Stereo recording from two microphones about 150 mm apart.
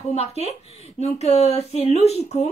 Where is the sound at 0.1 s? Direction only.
45° left (ahead or behind).